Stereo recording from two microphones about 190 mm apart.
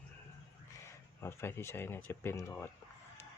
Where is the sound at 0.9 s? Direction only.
15° left (ahead or behind).